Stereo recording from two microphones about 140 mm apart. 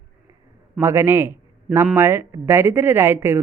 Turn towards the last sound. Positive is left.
turn(degrees=-20)  # may be behind; listen again after turning